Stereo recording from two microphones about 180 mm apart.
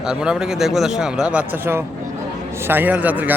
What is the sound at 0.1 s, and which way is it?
A man's voice, 5° right (ahead or behind).